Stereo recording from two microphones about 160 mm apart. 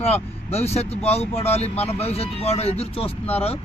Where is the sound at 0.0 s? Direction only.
40° left (ahead or behind).